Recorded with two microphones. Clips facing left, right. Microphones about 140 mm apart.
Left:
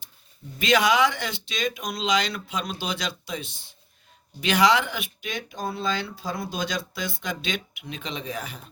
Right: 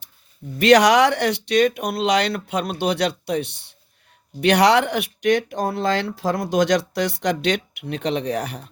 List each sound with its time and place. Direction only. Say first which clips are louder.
0.6 s speech: right 7 dB; 70° right (ahead or behind)